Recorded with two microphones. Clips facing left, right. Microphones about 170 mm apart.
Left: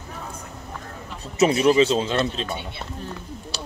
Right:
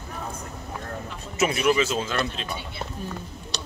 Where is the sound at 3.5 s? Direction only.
5° left (ahead or behind).